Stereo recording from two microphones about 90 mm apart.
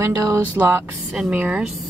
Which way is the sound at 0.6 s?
20° right (ahead or behind).